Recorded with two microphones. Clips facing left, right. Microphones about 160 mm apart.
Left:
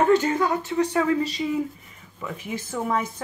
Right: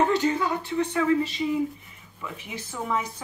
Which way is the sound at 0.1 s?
45° left (ahead or behind).